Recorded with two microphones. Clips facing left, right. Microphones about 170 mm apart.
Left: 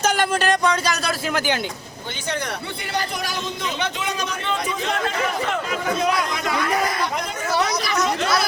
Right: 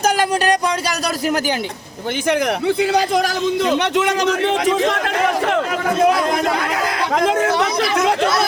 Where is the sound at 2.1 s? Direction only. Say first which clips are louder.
Right 10 dB; 90° right; by 6.7 s 55° right (ahead or behind).